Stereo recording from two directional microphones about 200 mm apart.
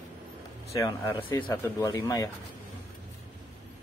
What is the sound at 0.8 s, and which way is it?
Speech, 20° left (ahead or behind).